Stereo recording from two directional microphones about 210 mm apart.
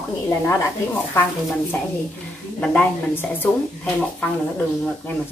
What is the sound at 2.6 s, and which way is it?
Speech, 5° left (ahead or behind).